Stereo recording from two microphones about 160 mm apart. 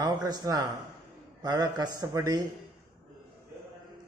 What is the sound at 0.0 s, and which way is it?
A man's voice, 25° right (ahead or behind).